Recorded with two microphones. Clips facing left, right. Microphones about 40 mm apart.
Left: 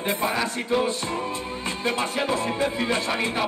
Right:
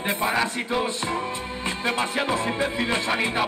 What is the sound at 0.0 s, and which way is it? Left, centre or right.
Music, centre.